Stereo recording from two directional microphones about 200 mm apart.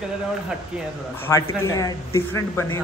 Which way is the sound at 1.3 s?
15° left (ahead or behind).